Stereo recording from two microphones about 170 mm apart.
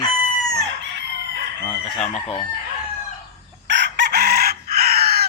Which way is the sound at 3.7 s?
90° right.